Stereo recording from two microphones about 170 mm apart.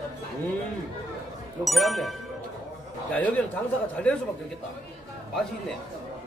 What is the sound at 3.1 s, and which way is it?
A man's voice, 10° left (ahead or behind).